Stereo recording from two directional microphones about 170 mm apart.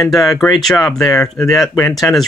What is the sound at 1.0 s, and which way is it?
Speech, 20° left (ahead or behind).